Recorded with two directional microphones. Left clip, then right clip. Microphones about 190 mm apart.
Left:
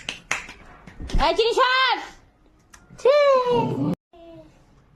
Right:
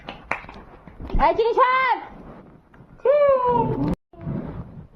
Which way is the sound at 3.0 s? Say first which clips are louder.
Even; 65° left (ahead or behind).